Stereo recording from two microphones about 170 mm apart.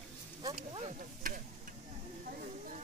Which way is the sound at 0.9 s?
55° right (ahead or behind).